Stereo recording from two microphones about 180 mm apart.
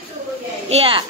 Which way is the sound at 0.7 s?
30° right (ahead or behind).